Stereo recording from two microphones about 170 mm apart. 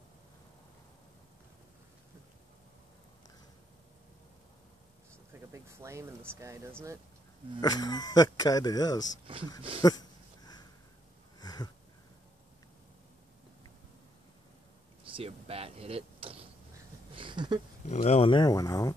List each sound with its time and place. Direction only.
5.5 s speech: 15° right (ahead or behind)
7.6 s speech: 25° left (ahead or behind)
9.3 s speech: 30° right (ahead or behind)
9.8 s a sound: 25° left (ahead or behind)
15.1 s vehicle: 35° right (ahead or behind)
17.1 s a sound: 30° right (ahead or behind)
17.8 s speech: 40° left (ahead or behind); by 18.9 s 20° left (ahead or behind)